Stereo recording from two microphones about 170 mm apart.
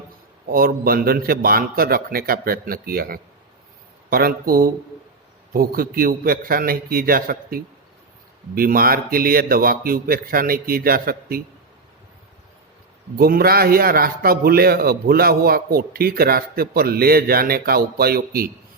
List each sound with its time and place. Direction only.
0.4 s a man's voice: 60° right (ahead or behind)
13.1 s a man's voice: 60° right (ahead or behind)